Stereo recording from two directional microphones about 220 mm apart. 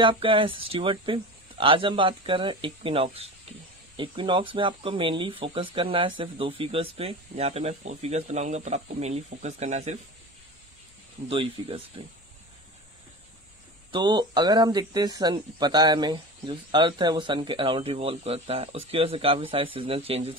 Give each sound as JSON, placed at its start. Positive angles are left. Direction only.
{"t": 0.0, "sound": "speech", "side_deg": -25}
{"t": 11.2, "sound": "speech", "side_deg": -25}
{"t": 13.9, "sound": "speech", "side_deg": -20}